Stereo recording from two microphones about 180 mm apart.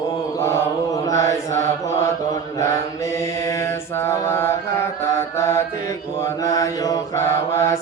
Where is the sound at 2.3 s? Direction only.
15° left (ahead or behind).